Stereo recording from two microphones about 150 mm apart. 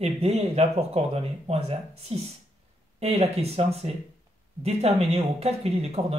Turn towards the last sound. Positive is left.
turn(degrees=-45)  # may be behind; listen again after turning